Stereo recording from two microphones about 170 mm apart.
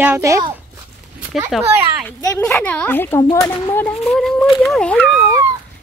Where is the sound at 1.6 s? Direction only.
15° right (ahead or behind).